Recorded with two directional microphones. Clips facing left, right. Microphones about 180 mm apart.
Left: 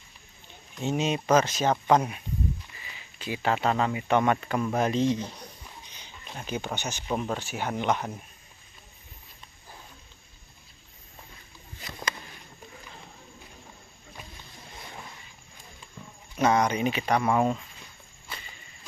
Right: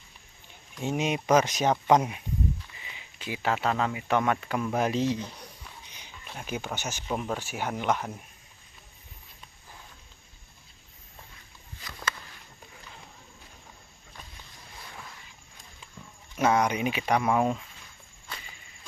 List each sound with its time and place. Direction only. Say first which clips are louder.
0.7 s speech: left 1 dB; 10° right (ahead or behind)
2.9 s a sound: left 2 dB; 15° right (ahead or behind)
3.4 s speech: left 2 dB; 5° right (ahead or behind)
6.3 s speech: left 2 dB; 10° right (ahead or behind)
7.3 s speech: left 1 dB; 10° right (ahead or behind)
11.8 s a sound: left 1 dB; 20° left (ahead or behind)
16.3 s speech: left 1 dB; 5° right (ahead or behind)